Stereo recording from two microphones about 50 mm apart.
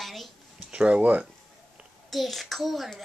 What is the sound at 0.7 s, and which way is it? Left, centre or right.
Speech, right.